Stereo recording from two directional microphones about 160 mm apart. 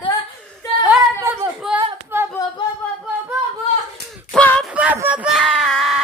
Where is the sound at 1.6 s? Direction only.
Centre (ahead or behind).